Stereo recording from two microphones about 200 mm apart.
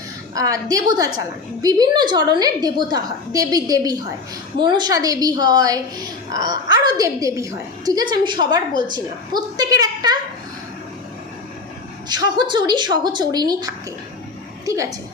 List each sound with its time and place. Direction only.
0.3 s a woman's voice: 15° right (ahead or behind)
12.0 s a woman's voice: 20° right (ahead or behind)
14.6 s a sound: 15° right (ahead or behind)